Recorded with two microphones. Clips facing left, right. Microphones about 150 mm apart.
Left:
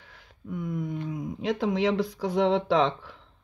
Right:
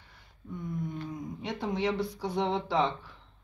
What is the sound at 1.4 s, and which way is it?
Speech, 90° left.